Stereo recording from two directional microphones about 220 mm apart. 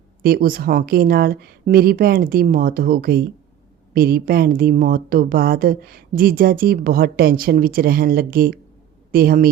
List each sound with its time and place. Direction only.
0.2 s a woman's voice: 45° right (ahead or behind)